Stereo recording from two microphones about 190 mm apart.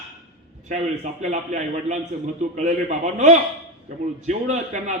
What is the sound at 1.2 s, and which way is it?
A man's voice, 40° right (ahead or behind).